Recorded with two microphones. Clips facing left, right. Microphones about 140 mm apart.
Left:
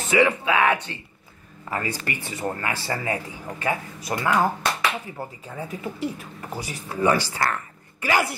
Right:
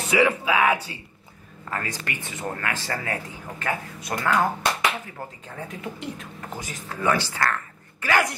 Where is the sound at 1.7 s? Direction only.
10° left (ahead or behind).